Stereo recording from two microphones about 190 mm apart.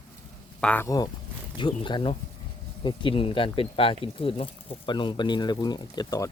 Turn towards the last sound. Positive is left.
turn(degrees=20)  # may be behind; listen again after turning